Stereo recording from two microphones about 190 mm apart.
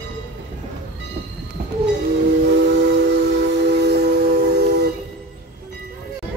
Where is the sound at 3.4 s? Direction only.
65° right (ahead or behind).